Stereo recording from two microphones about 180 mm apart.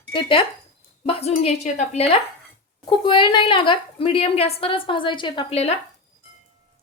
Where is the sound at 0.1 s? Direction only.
30° left (ahead or behind).